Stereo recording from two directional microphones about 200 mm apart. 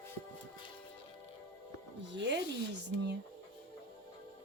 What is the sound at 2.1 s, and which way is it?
Speech, 60° right (ahead or behind).